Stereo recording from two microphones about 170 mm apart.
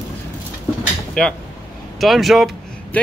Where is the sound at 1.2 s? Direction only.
5° left (ahead or behind).